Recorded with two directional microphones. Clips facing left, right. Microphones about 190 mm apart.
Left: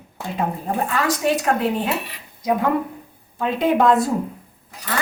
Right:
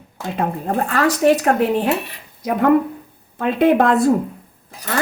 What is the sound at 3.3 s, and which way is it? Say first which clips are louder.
Speech: right 4 dB; 60° right (ahead or behind).